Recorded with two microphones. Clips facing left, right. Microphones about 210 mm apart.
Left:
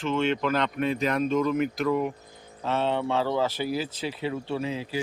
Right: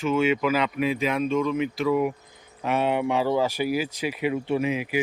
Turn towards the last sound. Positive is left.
turn(degrees=-15)  # may be behind; listen again after turning